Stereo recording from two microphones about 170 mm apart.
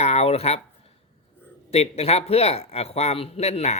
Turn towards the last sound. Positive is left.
turn(degrees=40)  # may be behind; listen again after turning